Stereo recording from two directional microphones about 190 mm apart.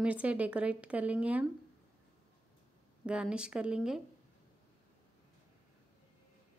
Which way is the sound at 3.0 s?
5° right (ahead or behind).